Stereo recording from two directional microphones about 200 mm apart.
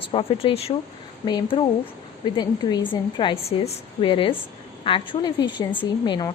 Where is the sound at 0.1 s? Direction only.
25° left (ahead or behind).